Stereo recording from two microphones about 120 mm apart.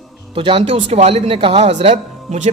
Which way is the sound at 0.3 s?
45° right (ahead or behind).